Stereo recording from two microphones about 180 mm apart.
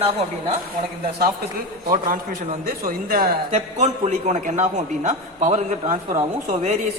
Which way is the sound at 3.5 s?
40° right (ahead or behind).